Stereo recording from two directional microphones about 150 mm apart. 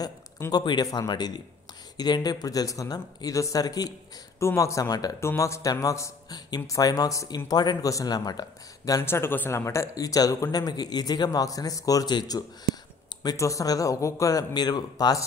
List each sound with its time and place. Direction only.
0.0 s speech: 25° left (ahead or behind)